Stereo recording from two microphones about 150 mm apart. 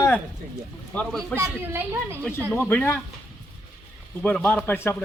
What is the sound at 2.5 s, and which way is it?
Speech, 10° left (ahead or behind).